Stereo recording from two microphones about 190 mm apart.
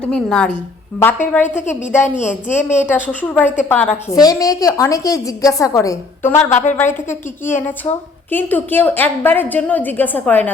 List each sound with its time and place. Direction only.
0.0 s a woman's voice: 5° left (ahead or behind)
4.1 s a woman's voice: 20° left (ahead or behind)
6.5 s a woman's voice: 40° left (ahead or behind)
6.7 s a woman's voice: 10° left (ahead or behind)